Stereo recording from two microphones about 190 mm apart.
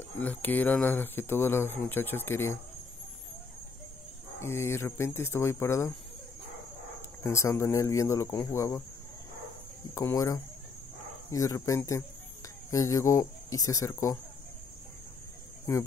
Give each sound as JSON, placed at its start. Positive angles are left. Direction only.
{"t": 0.2, "sound": "speech", "side_deg": 10}
{"t": 4.4, "sound": "speech", "side_deg": 15}
{"t": 7.2, "sound": "speech", "side_deg": 15}
{"t": 9.9, "sound": "speech", "side_deg": 15}
{"t": 15.7, "sound": "speech", "side_deg": 10}